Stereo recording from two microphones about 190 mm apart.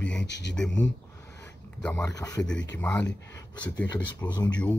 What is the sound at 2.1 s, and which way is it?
Speech, 20° left (ahead or behind).